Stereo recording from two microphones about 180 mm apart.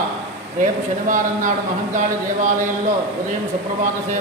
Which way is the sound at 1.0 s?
45° right (ahead or behind).